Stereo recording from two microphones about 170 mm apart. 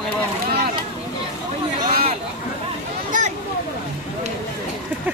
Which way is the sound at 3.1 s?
50° right (ahead or behind).